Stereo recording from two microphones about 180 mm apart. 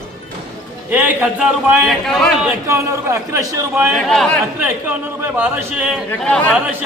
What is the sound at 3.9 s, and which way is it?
Speech, centre (ahead or behind).